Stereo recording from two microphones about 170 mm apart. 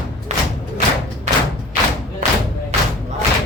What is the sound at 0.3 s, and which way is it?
Thump, 40° right (ahead or behind).